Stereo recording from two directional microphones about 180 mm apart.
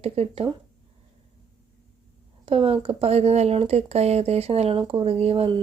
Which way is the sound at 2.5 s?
30° right (ahead or behind).